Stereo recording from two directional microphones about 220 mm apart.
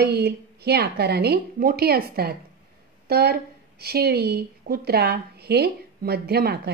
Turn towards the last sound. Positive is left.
turn(degrees=-45)  # may be behind; listen again after turning